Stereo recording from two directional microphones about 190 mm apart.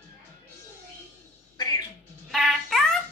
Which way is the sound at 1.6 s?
20° left (ahead or behind).